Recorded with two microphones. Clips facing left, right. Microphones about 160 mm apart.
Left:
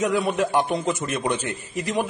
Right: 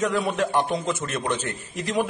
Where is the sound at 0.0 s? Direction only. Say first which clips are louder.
Left 2 dB; 5° left (ahead or behind).